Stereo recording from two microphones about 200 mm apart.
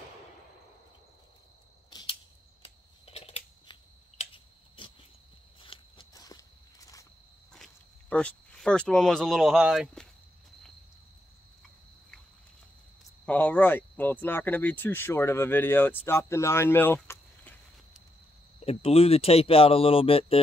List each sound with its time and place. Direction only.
1.9 s a sound: 20° left (ahead or behind)
4.2 s cricket: 25° left (ahead or behind)
5.6 s walk: 25° left (ahead or behind)
7.5 s speech: 5° left (ahead or behind)
13.2 s speech: 5° left (ahead or behind)
18.6 s speech: 30° left (ahead or behind)